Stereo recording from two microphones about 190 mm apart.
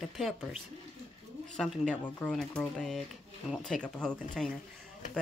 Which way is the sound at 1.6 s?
5° left (ahead or behind).